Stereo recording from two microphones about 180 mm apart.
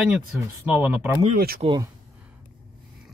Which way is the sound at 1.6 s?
25° right (ahead or behind).